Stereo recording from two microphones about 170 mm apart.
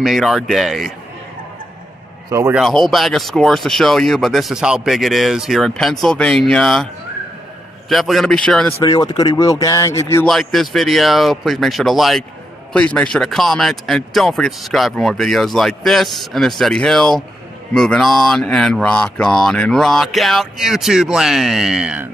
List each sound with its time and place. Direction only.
0.0 s speech: centre (ahead or behind)
2.3 s a man's voice: 15° right (ahead or behind)
2.6 s speech: centre (ahead or behind)
7.9 s speech: centre (ahead or behind)
8.8 s speech: 20° left (ahead or behind)
10.2 s speech: centre (ahead or behind)